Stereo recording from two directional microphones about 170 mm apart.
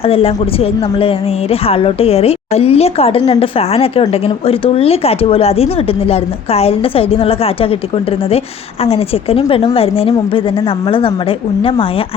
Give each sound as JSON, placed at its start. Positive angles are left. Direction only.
{"t": 0.0, "sound": "a woman's voice", "side_deg": 35}
{"t": 8.8, "sound": "a woman's voice", "side_deg": 35}